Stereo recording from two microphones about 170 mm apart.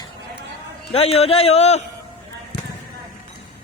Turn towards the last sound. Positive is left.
turn(degrees=80)